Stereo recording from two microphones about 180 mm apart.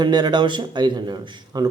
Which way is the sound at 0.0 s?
25° right (ahead or behind).